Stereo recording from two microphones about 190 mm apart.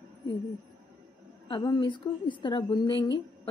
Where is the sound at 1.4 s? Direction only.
25° left (ahead or behind).